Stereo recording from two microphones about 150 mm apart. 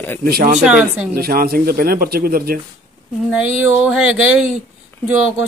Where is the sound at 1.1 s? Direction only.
90° right.